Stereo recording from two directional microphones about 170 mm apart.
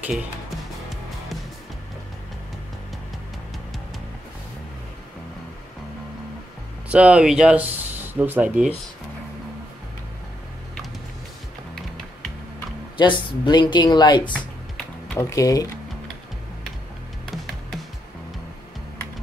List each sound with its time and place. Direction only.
6.9 s speech: 5° right (ahead or behind)
12.9 s speech: 30° left (ahead or behind)